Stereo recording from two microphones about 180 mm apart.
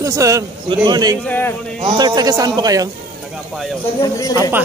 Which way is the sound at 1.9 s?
25° right (ahead or behind).